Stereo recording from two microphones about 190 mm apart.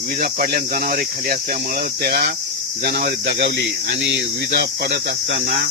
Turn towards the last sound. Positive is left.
turn(degrees=-75)  # may be behind; listen again after turning